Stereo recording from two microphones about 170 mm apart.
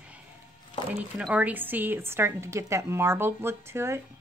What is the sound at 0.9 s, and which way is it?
Speech, 10° right (ahead or behind).